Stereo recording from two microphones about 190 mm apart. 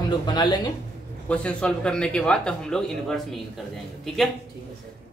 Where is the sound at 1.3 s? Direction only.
5° left (ahead or behind).